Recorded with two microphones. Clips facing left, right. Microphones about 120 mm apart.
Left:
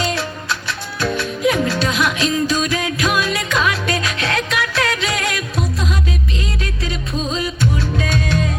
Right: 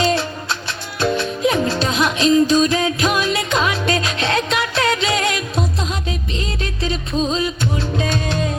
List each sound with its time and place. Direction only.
0.0 s music: 30° right (ahead or behind)
7.3 s music: 30° right (ahead or behind)